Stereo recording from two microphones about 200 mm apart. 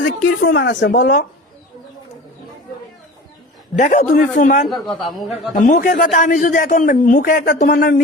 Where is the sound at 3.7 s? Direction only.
35° left (ahead or behind).